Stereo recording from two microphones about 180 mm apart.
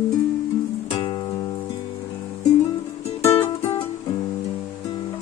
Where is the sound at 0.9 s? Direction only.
25° left (ahead or behind).